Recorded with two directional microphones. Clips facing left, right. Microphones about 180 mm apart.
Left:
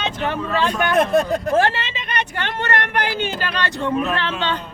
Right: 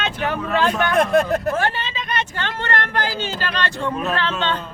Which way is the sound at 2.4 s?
20° left (ahead or behind).